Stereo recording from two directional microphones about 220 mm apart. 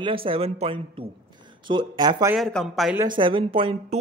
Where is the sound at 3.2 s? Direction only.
20° right (ahead or behind).